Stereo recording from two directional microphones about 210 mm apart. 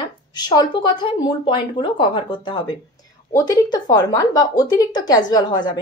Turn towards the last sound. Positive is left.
turn(degrees=20)  # may be behind; listen again after turning